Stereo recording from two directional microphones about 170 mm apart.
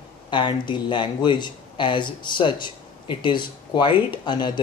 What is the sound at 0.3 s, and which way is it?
Speech, 25° left (ahead or behind).